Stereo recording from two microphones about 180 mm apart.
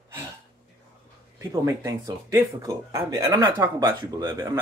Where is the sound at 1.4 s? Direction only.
15° right (ahead or behind).